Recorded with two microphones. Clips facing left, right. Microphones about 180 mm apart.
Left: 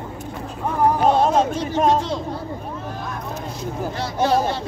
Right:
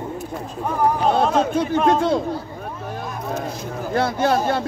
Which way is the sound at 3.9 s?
55° right (ahead or behind).